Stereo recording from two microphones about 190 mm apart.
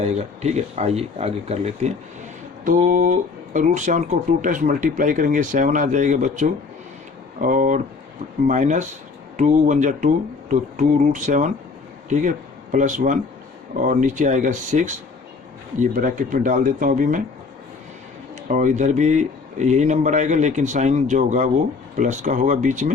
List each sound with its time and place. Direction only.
0.0 s speech: 35° right (ahead or behind)
2.6 s speech: 45° right (ahead or behind)
18.4 s speech: 40° right (ahead or behind)